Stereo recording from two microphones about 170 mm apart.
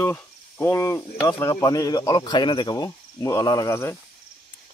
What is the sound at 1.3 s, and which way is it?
Speech, 20° left (ahead or behind).